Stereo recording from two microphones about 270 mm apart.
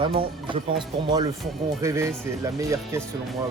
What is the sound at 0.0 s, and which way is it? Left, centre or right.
Speech, centre.